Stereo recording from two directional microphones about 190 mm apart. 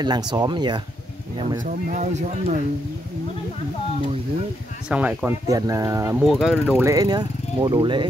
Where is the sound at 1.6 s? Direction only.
40° right (ahead or behind).